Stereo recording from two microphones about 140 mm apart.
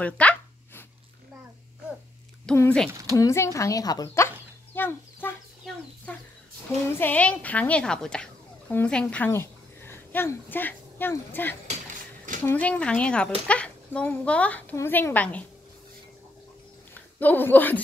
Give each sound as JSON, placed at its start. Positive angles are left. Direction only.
{"t": 0.0, "sound": "a sound", "side_deg": 10}
{"t": 2.5, "sound": "speech", "side_deg": 5}
{"t": 2.9, "sound": "speech", "side_deg": -25}
{"t": 3.2, "sound": "speech", "side_deg": 20}
{"t": 4.7, "sound": "a sound", "side_deg": 15}
{"t": 7.0, "sound": "a woman's voice", "side_deg": 10}
{"t": 16.9, "sound": "speech", "side_deg": 15}